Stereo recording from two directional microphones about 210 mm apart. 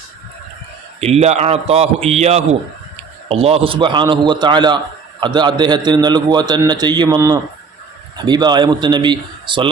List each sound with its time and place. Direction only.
1.0 s a man's voice: 30° right (ahead or behind)